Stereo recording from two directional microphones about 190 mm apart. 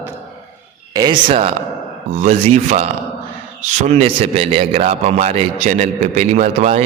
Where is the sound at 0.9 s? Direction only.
20° right (ahead or behind).